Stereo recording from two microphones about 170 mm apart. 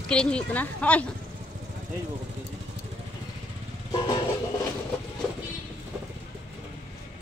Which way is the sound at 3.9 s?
25° left (ahead or behind).